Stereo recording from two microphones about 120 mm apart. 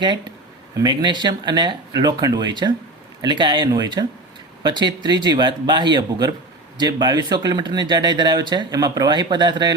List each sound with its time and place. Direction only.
0.8 s speech: 40° right (ahead or behind)